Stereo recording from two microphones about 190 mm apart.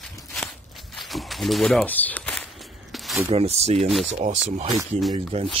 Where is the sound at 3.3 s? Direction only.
35° right (ahead or behind).